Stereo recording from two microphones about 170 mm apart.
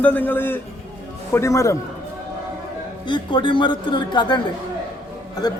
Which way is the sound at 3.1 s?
30° left (ahead or behind).